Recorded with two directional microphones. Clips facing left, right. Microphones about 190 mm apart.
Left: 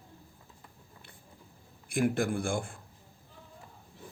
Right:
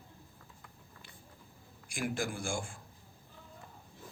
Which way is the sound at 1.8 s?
60° left (ahead or behind).